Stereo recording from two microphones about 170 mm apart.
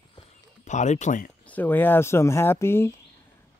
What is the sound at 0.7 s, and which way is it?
Speech, 45° left (ahead or behind).